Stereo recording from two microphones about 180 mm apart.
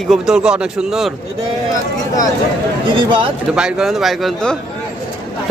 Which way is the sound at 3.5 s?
5° right (ahead or behind).